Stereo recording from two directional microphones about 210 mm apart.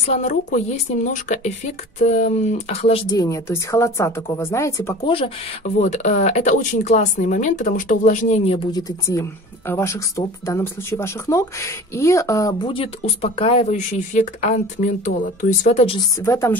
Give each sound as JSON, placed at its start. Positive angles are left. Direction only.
{"t": 0.0, "sound": "speech", "side_deg": 35}
{"t": 5.1, "sound": "speech", "side_deg": 30}
{"t": 8.7, "sound": "speech", "side_deg": 15}
{"t": 15.6, "sound": "speech", "side_deg": 30}
{"t": 16.2, "sound": "speech", "side_deg": 10}